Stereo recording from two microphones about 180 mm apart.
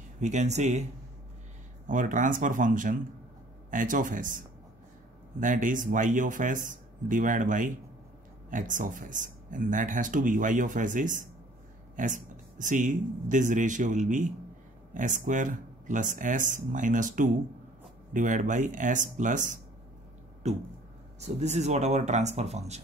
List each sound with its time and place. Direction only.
0.2 s speech: 40° right (ahead or behind)
1.9 s speech: 45° right (ahead or behind)